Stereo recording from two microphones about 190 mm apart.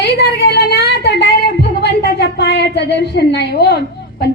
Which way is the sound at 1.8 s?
60° left (ahead or behind).